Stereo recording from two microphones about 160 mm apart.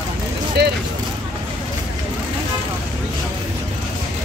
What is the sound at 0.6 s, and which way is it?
Vehicle, 90° right.